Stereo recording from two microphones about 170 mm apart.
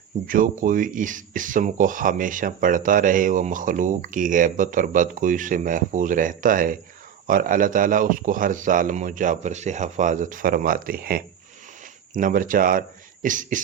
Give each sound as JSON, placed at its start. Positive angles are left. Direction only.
{"t": 0.3, "sound": "speech", "side_deg": -55}